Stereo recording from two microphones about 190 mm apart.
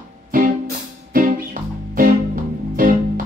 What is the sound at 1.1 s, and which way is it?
Music, 45° right (ahead or behind).